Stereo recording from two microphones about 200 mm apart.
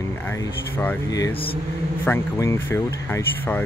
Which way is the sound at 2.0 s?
15° left (ahead or behind).